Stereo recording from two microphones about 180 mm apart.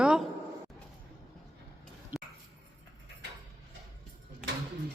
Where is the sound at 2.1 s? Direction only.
15° right (ahead or behind).